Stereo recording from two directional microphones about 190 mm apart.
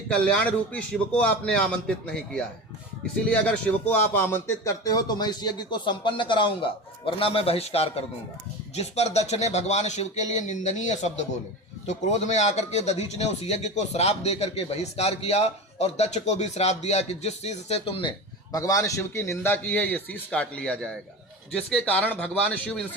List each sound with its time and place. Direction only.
0.1 s a man's voice: 5° left (ahead or behind); by 18.1 s 30° left (ahead or behind)
18.5 s a man's voice: 15° left (ahead or behind)